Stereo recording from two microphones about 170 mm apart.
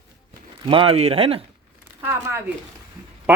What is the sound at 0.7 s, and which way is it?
Speech, 30° right (ahead or behind).